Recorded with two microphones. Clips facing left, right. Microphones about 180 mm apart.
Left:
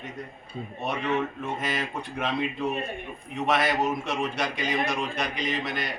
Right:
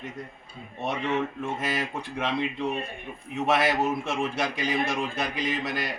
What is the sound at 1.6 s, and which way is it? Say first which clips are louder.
A man's voice: right 1 dB; 5° right (ahead or behind).